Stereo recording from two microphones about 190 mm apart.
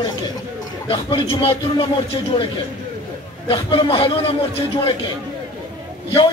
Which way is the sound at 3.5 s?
30° left (ahead or behind).